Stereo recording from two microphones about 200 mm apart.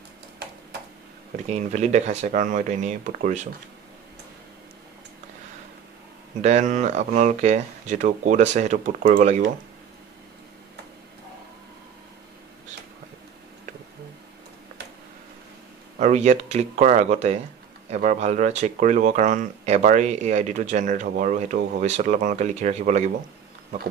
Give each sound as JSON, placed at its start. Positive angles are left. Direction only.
{"t": 1.5, "sound": "speech", "side_deg": -35}
{"t": 6.4, "sound": "speech", "side_deg": -35}
{"t": 16.0, "sound": "speech", "side_deg": -35}